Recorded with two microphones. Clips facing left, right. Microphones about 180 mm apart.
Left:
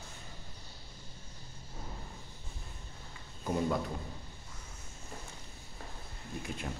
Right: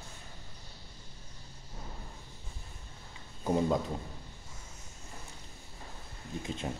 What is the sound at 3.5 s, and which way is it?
Speech, 25° right (ahead or behind).